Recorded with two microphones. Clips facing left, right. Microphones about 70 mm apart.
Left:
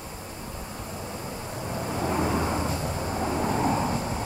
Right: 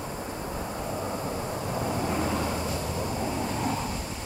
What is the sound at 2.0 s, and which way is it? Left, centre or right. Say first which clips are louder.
Vehicle: left 6 dB; centre.